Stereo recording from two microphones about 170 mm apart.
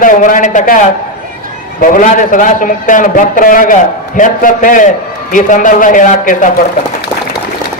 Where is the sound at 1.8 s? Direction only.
50° left (ahead or behind).